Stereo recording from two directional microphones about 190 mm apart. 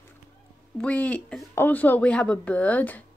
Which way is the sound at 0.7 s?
5° left (ahead or behind).